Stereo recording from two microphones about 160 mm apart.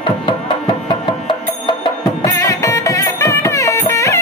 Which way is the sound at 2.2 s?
20° left (ahead or behind).